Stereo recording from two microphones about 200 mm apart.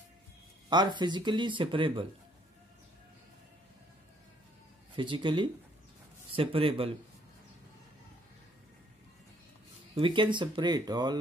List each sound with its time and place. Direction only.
0.7 s speech: 20° right (ahead or behind)
4.9 s speech: 25° right (ahead or behind)
9.9 s speech: 25° right (ahead or behind)